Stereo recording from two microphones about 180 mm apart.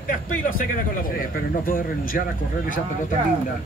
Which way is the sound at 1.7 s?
50° left (ahead or behind).